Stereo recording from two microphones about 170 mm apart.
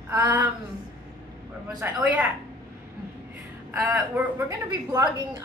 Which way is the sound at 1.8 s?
10° right (ahead or behind).